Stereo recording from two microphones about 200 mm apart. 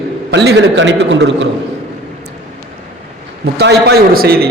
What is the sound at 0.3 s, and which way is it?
A man's voice, 60° right (ahead or behind).